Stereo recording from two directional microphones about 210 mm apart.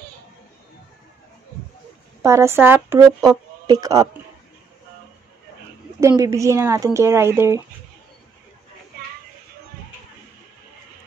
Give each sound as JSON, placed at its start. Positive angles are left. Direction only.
{"t": 2.2, "sound": "speech", "side_deg": -15}
{"t": 5.9, "sound": "speech", "side_deg": -15}